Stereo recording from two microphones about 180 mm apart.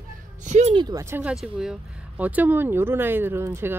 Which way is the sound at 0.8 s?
20° right (ahead or behind).